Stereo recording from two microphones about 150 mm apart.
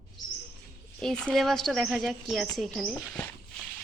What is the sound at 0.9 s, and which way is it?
Speech, 5° left (ahead or behind).